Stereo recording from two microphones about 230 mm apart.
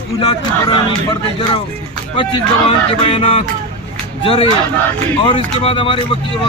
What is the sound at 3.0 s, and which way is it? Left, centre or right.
A man's voice, left.